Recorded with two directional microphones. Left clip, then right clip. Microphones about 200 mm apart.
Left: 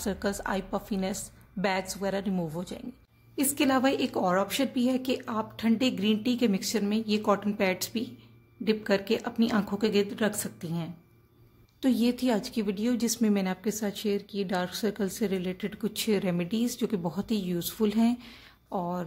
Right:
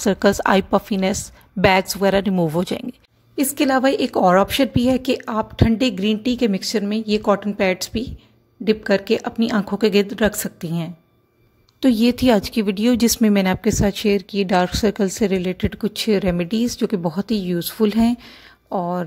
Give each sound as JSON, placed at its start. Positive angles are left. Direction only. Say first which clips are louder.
{"t": 0.0, "sound": "a woman's voice", "louder": "right 15 dB", "side_deg": -35}
{"t": 3.3, "sound": "a woman's voice", "louder": "right 8 dB", "side_deg": -25}